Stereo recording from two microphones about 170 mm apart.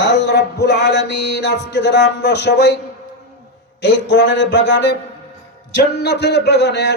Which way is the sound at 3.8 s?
90° left.